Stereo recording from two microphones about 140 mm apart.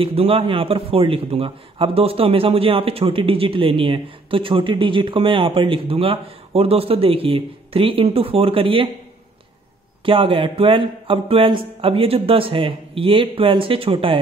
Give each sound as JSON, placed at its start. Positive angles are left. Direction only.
{"t": 0.0, "sound": "a man's voice", "side_deg": -40}
{"t": 10.0, "sound": "a man's voice", "side_deg": -40}